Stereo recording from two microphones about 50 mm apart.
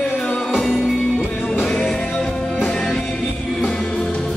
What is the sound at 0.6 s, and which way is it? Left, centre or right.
Music, centre.